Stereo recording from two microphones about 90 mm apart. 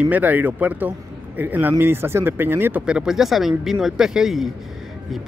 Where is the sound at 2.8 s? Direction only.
10° right (ahead or behind).